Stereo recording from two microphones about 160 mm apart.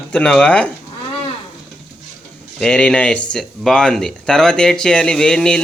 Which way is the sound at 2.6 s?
5° left (ahead or behind).